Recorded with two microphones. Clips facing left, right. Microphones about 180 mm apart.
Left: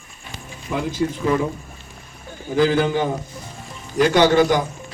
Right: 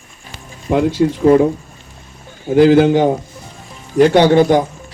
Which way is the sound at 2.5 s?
70° right (ahead or behind).